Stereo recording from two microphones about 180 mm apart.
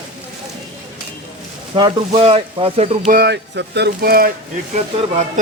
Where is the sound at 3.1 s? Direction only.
65° right (ahead or behind).